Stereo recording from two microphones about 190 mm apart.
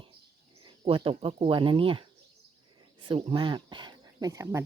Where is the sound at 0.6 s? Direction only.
25° right (ahead or behind).